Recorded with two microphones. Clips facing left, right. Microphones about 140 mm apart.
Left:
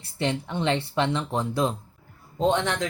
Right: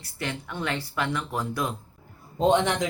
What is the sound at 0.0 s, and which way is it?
Speech, 30° left (ahead or behind).